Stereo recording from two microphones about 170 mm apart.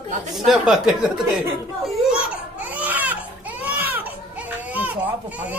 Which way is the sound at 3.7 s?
10° right (ahead or behind).